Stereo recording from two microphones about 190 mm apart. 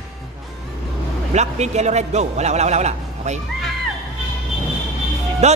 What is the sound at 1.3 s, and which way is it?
A man's voice, 35° right (ahead or behind).